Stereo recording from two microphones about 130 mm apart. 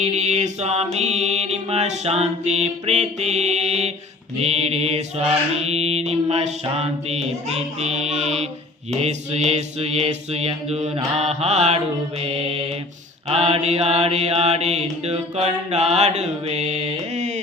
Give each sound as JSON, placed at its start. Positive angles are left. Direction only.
{"t": 0.0, "sound": "mantra", "side_deg": -60}
{"t": 12.2, "sound": "mantra", "side_deg": -50}